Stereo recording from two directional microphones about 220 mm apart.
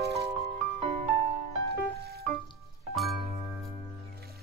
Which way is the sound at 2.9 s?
Centre (ahead or behind).